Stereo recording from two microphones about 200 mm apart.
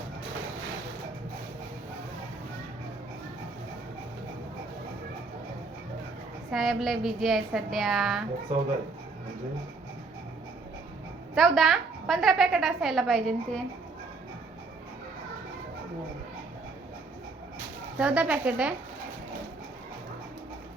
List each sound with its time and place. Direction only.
6.5 s a woman's voice: centre (ahead or behind)
11.3 s a woman's voice: centre (ahead or behind)
18.0 s a woman's voice: 5° right (ahead or behind)